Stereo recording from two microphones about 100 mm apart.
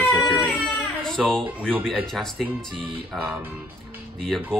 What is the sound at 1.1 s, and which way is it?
Speech, 5° left (ahead or behind).